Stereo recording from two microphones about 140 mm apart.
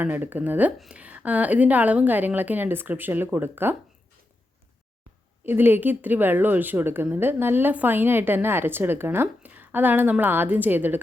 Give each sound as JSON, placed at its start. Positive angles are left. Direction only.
{"t": 0.0, "sound": "a woman's voice", "side_deg": -15}
{"t": 5.5, "sound": "a woman's voice", "side_deg": -15}